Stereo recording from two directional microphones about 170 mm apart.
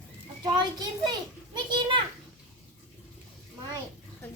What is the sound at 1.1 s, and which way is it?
Children playing, 25° right (ahead or behind).